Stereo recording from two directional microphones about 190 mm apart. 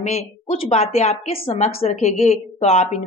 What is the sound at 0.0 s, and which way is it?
A woman's voice, 35° left (ahead or behind).